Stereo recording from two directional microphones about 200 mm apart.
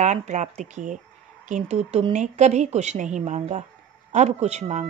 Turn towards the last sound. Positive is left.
turn(degrees=-35)  # may be behind; listen again after turning